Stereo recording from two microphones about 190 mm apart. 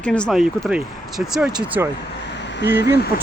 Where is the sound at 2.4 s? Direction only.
65° left (ahead or behind).